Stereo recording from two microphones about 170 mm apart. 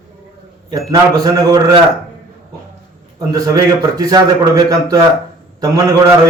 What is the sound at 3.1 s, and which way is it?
A man's voice, 20° right (ahead or behind).